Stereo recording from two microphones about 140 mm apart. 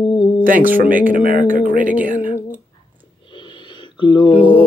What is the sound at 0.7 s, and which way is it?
Speech, 90° right.